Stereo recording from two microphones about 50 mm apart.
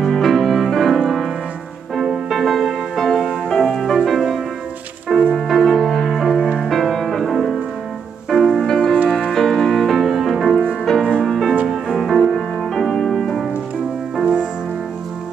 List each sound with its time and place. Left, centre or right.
0.0 s music: centre
5.3 s music: centre
8.6 s music: centre
14.2 s music: centre